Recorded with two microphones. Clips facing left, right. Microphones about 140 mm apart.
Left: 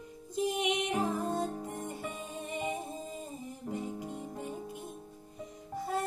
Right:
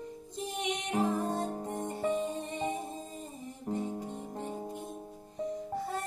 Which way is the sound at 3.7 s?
35° right (ahead or behind).